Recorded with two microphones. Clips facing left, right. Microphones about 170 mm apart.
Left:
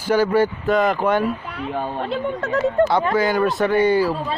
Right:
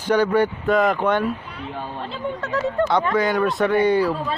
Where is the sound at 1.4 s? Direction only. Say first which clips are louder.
Left 6 dB; 65° left (ahead or behind); by 2.8 s 50° left (ahead or behind).